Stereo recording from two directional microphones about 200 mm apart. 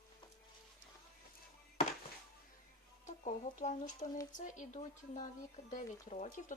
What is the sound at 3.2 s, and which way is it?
Speech, 35° left (ahead or behind).